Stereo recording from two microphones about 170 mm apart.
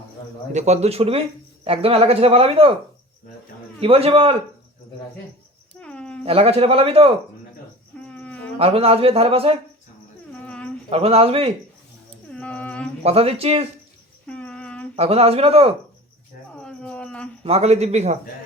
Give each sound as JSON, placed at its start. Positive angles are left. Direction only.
{"t": 0.5, "sound": "speech", "side_deg": -40}
{"t": 3.8, "sound": "speech", "side_deg": -35}
{"t": 5.8, "sound": "a sound", "side_deg": 5}
{"t": 6.2, "sound": "speech", "side_deg": -35}
{"t": 8.0, "sound": "a sound", "side_deg": 5}
{"t": 8.5, "sound": "speech", "side_deg": -35}
{"t": 10.3, "sound": "a sound", "side_deg": 5}
{"t": 10.8, "sound": "speech", "side_deg": -35}
{"t": 12.3, "sound": "music", "side_deg": 5}
{"t": 13.0, "sound": "speech", "side_deg": -35}
{"t": 14.3, "sound": "a sound", "side_deg": 5}
{"t": 14.9, "sound": "speech", "side_deg": -35}
{"t": 16.6, "sound": "cricket", "side_deg": 5}
{"t": 17.4, "sound": "speech", "side_deg": -35}